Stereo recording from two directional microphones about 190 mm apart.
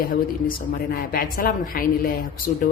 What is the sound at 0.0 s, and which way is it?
A woman's voice, 50° left (ahead or behind).